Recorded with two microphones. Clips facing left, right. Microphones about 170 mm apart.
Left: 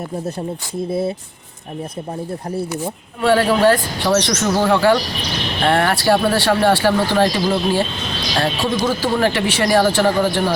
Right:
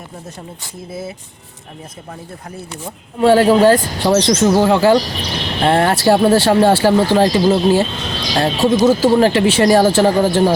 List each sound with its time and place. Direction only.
3.2 s speech: 20° right (ahead or behind)
8.8 s speech: 45° right (ahead or behind)
9.1 s speech: 25° right (ahead or behind)
10.2 s speech: 40° right (ahead or behind)